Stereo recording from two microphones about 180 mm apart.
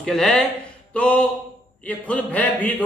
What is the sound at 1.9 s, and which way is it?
Speech, 10° left (ahead or behind).